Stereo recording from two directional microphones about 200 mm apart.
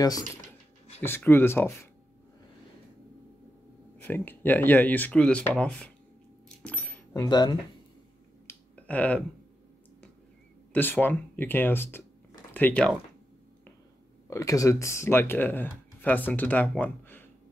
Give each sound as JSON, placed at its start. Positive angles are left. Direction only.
{"t": 1.0, "sound": "speech", "side_deg": 10}
{"t": 4.0, "sound": "speech", "side_deg": 10}
{"t": 6.6, "sound": "keys jangling", "side_deg": 5}
{"t": 7.2, "sound": "speech", "side_deg": 20}
{"t": 8.5, "sound": "a sound", "side_deg": 5}
{"t": 10.7, "sound": "speech", "side_deg": 10}
{"t": 14.3, "sound": "speech", "side_deg": 15}